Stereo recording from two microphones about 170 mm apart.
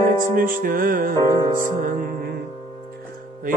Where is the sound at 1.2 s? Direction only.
25° right (ahead or behind).